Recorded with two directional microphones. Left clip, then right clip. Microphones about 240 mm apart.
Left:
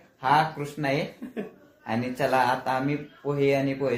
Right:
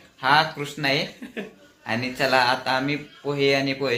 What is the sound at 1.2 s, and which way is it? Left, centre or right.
Speech, centre.